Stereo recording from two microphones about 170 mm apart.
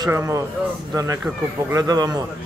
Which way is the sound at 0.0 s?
15° right (ahead or behind).